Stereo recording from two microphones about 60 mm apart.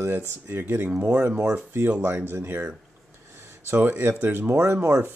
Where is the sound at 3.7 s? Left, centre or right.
Right.